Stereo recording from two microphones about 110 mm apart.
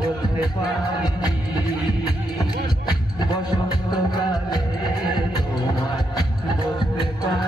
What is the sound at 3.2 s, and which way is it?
Music, 40° left (ahead or behind).